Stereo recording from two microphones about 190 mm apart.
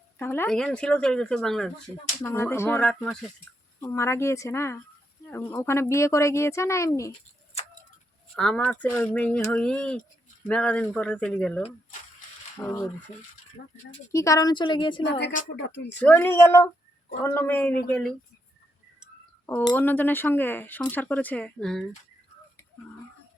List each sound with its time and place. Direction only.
0.2 s speech: 10° left (ahead or behind)
3.8 s speech: 15° left (ahead or behind)
8.4 s speech: 5° left (ahead or behind)
13.6 s speech: 60° left (ahead or behind)
14.1 s a woman's voice: 15° left (ahead or behind)
15.4 s speech: 65° left (ahead or behind)
16.0 s speech: 10° left (ahead or behind)
19.5 s speech: 10° left (ahead or behind)